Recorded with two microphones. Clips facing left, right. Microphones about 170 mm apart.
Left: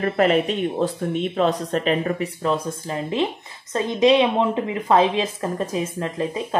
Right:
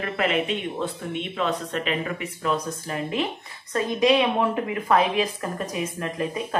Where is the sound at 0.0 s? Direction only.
40° left (ahead or behind).